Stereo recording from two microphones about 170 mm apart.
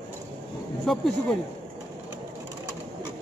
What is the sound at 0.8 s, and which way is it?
Speech, centre (ahead or behind).